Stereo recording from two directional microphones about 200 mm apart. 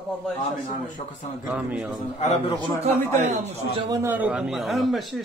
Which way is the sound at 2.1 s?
30° left (ahead or behind).